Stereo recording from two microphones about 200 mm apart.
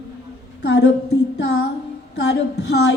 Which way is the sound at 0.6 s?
60° left (ahead or behind).